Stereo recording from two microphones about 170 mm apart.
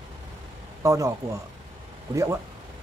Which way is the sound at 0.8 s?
20° right (ahead or behind).